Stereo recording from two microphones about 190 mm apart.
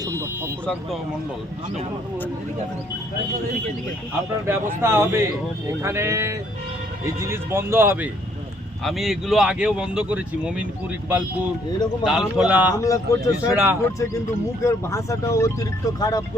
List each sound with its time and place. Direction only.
0.0 s a sound: 15° right (ahead or behind)
0.6 s speech: 5° left (ahead or behind)
4.4 s speech: 15° right (ahead or behind)
8.8 s speech: centre (ahead or behind)
12.0 s speech: 5° right (ahead or behind)
12.7 s speech: 15° left (ahead or behind)
14.6 s speech: 15° left (ahead or behind)